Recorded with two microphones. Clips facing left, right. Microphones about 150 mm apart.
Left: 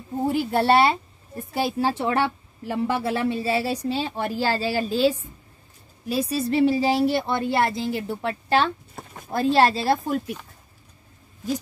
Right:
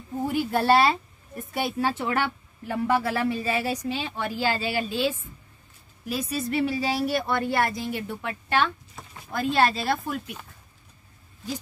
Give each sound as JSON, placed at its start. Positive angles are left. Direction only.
{"t": 0.3, "sound": "a woman's voice", "side_deg": 25}
{"t": 9.0, "sound": "a sound", "side_deg": 55}
{"t": 9.3, "sound": "a woman's voice", "side_deg": 35}